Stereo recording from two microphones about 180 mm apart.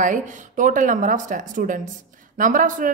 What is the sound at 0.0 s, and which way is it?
A woman's voice, 45° right (ahead or behind).